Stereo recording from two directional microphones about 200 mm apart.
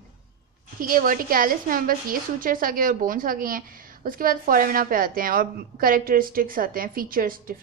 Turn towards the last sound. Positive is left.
turn(degrees=-45)  # may be behind; listen again after turning